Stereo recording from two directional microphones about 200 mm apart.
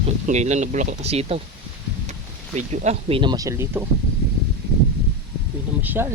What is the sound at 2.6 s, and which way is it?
Speech, 35° right (ahead or behind).